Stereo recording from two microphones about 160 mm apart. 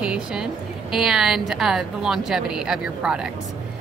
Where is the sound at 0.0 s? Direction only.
5° right (ahead or behind).